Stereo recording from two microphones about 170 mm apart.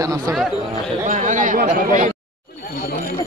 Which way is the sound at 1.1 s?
45° right (ahead or behind).